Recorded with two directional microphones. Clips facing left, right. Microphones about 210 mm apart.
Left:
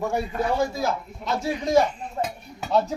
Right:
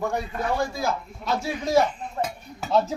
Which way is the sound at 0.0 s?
5° left (ahead or behind).